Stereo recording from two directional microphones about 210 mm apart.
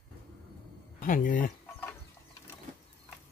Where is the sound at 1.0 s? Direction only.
40° left (ahead or behind).